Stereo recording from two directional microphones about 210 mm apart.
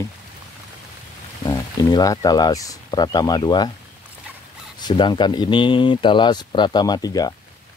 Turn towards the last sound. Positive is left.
turn(degrees=20)  # may be behind; listen again after turning